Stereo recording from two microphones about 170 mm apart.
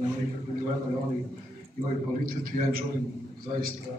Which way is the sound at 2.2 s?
55° right (ahead or behind).